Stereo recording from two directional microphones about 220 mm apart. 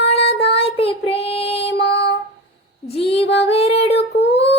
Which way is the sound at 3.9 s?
50° left (ahead or behind).